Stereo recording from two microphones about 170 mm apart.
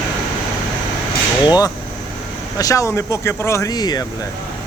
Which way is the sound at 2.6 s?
20° left (ahead or behind).